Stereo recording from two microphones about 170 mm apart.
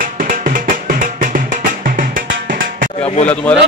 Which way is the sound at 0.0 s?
55° right (ahead or behind).